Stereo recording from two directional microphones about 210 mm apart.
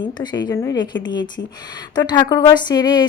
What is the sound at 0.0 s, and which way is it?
Speech, 20° left (ahead or behind).